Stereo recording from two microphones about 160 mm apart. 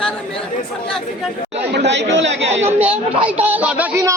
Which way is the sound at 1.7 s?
90° right.